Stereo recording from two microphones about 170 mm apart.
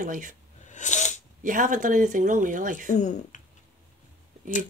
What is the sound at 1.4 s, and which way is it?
Speech, 50° right (ahead or behind).